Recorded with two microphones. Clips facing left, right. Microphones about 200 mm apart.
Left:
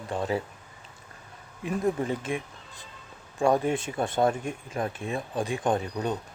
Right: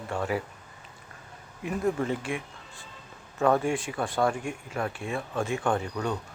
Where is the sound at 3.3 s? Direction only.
15° left (ahead or behind).